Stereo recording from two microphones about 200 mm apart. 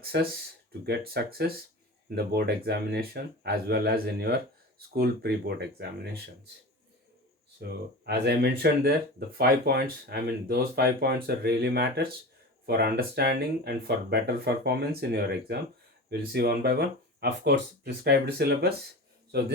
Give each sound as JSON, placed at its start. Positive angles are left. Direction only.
{"t": 0.0, "sound": "speech", "side_deg": -50}
{"t": 7.6, "sound": "speech", "side_deg": -55}